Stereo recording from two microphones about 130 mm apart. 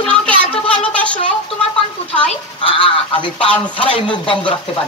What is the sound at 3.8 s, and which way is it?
Speech, 40° left (ahead or behind).